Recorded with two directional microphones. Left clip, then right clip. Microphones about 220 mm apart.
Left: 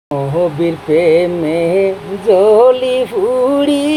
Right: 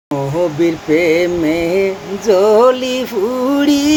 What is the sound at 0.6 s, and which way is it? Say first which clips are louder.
Music: even; 20° right (ahead or behind).